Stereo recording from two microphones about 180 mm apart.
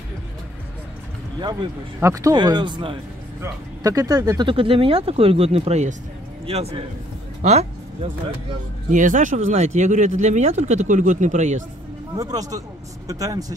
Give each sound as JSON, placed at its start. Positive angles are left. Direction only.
{"t": 1.4, "sound": "speech", "side_deg": -25}
{"t": 7.4, "sound": "vehicle", "side_deg": -35}
{"t": 8.9, "sound": "speech", "side_deg": -45}
{"t": 12.2, "sound": "speech", "side_deg": -20}